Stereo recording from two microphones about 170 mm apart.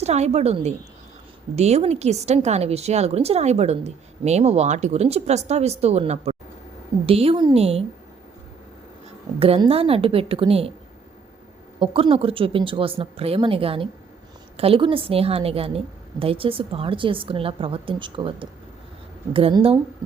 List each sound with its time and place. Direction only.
0.0 s a woman's voice: 40° right (ahead or behind)
9.4 s a woman's voice: 35° right (ahead or behind)
11.8 s a woman's voice: 30° right (ahead or behind)